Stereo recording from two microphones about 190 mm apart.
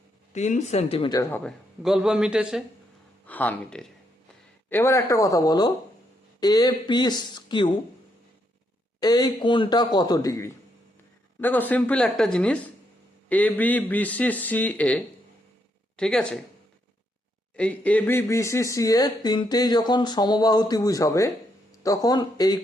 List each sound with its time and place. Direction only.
0.3 s speech: 35° left (ahead or behind)
1.1 s a man's voice: 15° left (ahead or behind)
1.5 s a woman's voice: centre (ahead or behind)
3.2 s a man's voice: 10° left (ahead or behind); by 7.7 s 25° left (ahead or behind)
9.0 s a woman's voice: 20° left (ahead or behind); by 16.4 s 5° left (ahead or behind)
17.6 s speech: 5° left (ahead or behind)